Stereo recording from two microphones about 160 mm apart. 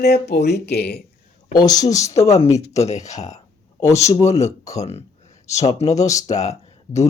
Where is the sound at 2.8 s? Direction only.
45° left (ahead or behind).